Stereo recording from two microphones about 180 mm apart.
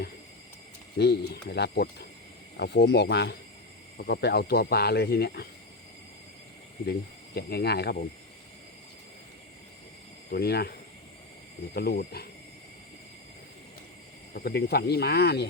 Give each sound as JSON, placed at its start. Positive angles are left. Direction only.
{"t": 0.9, "sound": "speech", "side_deg": 65}
{"t": 7.3, "sound": "speech", "side_deg": 65}
{"t": 10.2, "sound": "speech", "side_deg": 60}
{"t": 14.3, "sound": "speech", "side_deg": 60}